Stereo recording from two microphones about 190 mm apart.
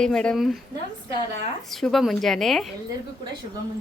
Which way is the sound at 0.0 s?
5° left (ahead or behind).